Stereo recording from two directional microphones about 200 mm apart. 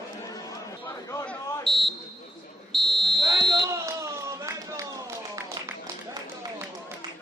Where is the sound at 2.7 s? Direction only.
Centre (ahead or behind).